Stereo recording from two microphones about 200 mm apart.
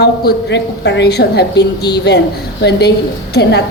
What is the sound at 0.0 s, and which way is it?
A woman's voice, 55° left (ahead or behind).